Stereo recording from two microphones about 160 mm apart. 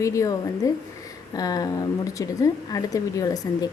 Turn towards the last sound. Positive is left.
turn(degrees=25)  # may be behind; listen again after turning